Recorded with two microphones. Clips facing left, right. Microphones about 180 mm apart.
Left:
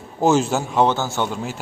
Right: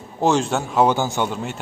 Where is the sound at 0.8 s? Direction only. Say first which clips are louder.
Right 1 dB; 15° right (ahead or behind).